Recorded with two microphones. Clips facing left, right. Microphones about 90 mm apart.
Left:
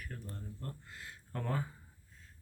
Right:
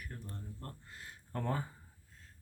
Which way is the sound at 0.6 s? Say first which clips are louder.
Left 2 dB; 35° right (ahead or behind).